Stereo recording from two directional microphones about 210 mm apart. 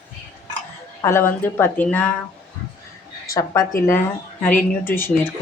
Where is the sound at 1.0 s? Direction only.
15° left (ahead or behind).